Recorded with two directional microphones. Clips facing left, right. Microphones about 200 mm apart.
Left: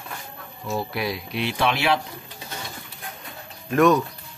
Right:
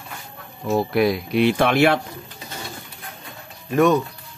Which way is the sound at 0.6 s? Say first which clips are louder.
Right 8 dB; 45° right (ahead or behind).